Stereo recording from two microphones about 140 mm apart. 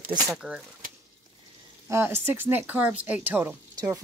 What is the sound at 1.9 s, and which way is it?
Speech, 15° right (ahead or behind).